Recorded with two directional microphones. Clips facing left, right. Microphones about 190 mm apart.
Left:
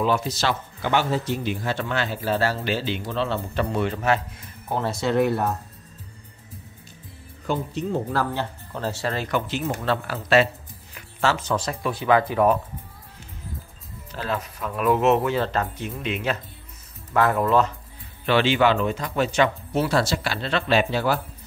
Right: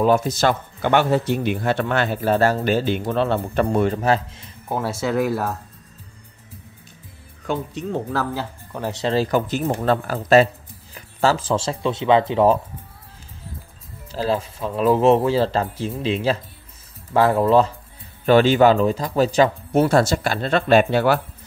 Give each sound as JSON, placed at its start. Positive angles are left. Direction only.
{"t": 0.0, "sound": "speech", "side_deg": -50}
{"t": 3.7, "sound": "speech", "side_deg": -45}
{"t": 4.6, "sound": "speech", "side_deg": -10}
{"t": 7.4, "sound": "speech", "side_deg": 0}
{"t": 9.1, "sound": "speech", "side_deg": -35}
{"t": 14.1, "sound": "speech", "side_deg": -30}
{"t": 18.2, "sound": "speech", "side_deg": -40}
{"t": 19.7, "sound": "speech", "side_deg": -50}